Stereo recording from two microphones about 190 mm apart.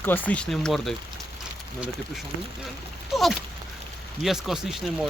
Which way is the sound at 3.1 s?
Centre (ahead or behind).